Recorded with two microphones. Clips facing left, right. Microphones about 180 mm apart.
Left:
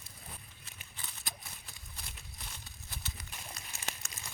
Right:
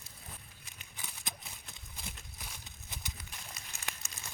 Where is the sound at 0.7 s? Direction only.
15° right (ahead or behind).